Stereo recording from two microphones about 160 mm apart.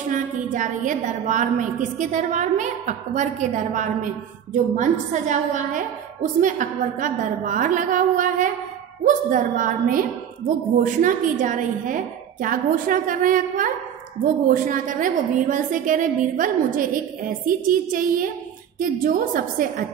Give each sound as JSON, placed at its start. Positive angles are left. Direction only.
{"t": 0.1, "sound": "a woman's voice", "side_deg": -55}
{"t": 10.8, "sound": "a woman's voice", "side_deg": -55}